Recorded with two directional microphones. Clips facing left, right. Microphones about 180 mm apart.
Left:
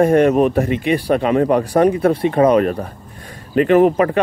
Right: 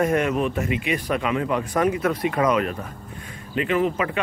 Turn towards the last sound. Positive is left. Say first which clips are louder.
# left 10 dB
turn(degrees=50)  # may be behind; listen again after turning